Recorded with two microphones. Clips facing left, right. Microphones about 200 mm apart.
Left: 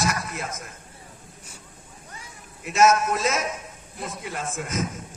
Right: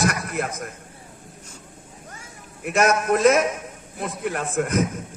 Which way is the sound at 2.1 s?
50° right (ahead or behind).